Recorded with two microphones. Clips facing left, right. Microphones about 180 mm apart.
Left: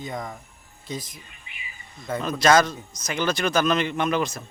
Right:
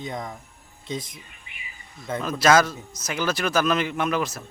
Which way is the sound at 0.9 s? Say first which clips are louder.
Right 2 dB; 25° right (ahead or behind).